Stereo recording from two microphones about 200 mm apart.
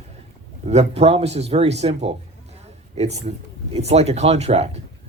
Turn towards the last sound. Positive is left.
turn(degrees=-30)  # may be behind; listen again after turning